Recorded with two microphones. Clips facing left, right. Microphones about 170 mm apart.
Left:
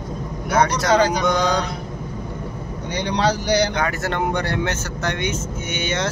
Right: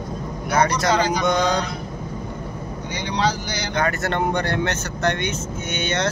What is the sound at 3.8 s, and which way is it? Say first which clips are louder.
Speech: right 1 dB; 10° left (ahead or behind).